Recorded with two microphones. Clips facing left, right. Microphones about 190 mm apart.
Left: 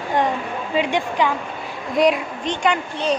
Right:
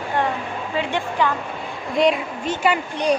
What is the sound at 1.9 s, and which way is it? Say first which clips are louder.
A woman's voice: left 1 dB; centre (ahead or behind).